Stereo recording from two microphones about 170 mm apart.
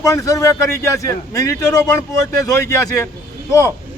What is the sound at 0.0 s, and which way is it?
A man's voice, 20° left (ahead or behind).